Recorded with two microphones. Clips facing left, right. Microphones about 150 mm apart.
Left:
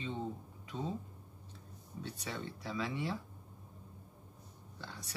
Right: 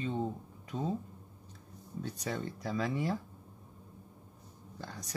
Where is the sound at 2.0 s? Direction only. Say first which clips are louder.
Right 5 dB; 45° right (ahead or behind).